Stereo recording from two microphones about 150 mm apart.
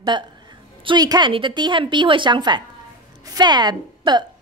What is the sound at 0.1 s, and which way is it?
Speech, 30° right (ahead or behind).